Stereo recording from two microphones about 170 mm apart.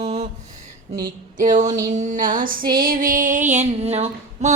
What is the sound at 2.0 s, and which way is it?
Female singing, 50° right (ahead or behind).